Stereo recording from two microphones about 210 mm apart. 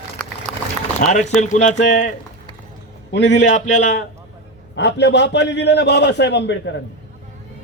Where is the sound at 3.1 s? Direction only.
60° left (ahead or behind).